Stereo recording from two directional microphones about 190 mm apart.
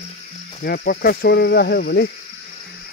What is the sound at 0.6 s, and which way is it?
Speech, 50° left (ahead or behind).